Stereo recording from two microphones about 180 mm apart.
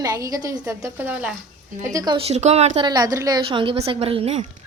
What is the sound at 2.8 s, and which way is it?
A woman's voice, 20° right (ahead or behind).